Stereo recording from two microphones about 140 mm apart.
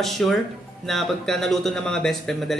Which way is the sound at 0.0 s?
Centre (ahead or behind).